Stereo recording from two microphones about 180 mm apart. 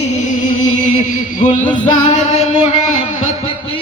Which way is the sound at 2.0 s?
35° left (ahead or behind).